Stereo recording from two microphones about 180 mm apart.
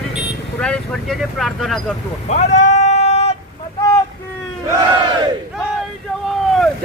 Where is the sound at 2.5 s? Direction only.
40° left (ahead or behind).